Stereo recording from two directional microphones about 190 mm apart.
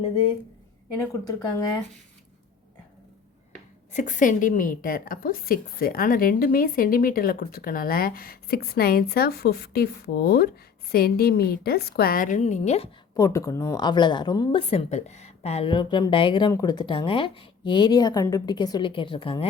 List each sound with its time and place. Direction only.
1.1 s speech: 15° left (ahead or behind)
3.9 s a woman's voice: 40° left (ahead or behind)
13.1 s a woman's voice: 15° left (ahead or behind)